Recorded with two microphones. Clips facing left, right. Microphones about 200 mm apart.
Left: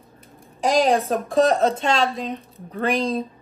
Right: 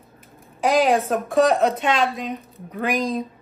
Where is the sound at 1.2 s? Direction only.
30° left (ahead or behind).